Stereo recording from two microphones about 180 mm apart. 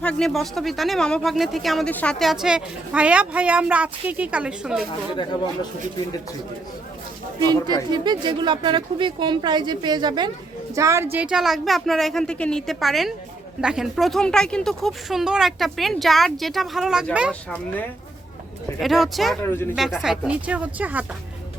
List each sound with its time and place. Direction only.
0.0 s speech: 5° left (ahead or behind)
5.1 s speech: 25° left (ahead or behind)
7.9 s a woman's voice: 25° right (ahead or behind); by 17.1 s centre (ahead or behind)
18.8 s speech: centre (ahead or behind)
19.4 s speech: 10° left (ahead or behind)
19.7 s speech: centre (ahead or behind)